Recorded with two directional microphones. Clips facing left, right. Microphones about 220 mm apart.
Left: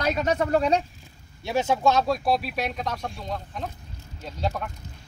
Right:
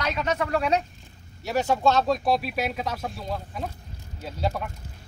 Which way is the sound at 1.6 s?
10° left (ahead or behind).